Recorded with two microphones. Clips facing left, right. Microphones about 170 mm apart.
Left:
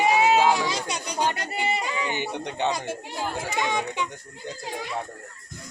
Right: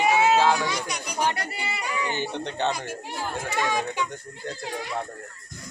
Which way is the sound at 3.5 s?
20° left (ahead or behind).